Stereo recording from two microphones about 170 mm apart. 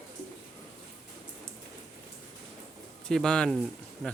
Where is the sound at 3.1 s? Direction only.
5° left (ahead or behind).